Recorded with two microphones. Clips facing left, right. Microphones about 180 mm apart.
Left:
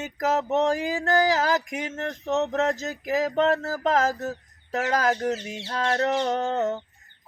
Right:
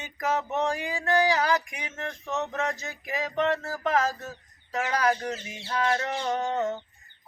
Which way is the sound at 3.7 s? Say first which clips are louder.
Left 3 dB; 45° left (ahead or behind).